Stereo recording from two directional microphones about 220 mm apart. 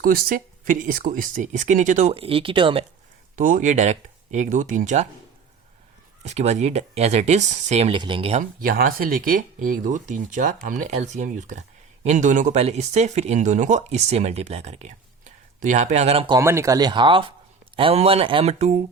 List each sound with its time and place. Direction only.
0.0 s speech: 40° right (ahead or behind); by 2.8 s 25° right (ahead or behind)
3.3 s speech: 35° right (ahead or behind)
6.2 s speech: 30° right (ahead or behind)